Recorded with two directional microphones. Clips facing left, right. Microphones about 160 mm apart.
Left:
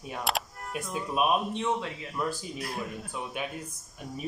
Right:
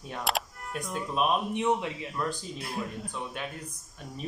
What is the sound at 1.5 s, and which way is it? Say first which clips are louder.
Speech: right 3 dB; 15° right (ahead or behind).